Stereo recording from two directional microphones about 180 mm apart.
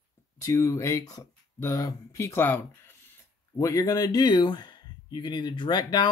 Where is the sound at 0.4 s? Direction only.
20° left (ahead or behind).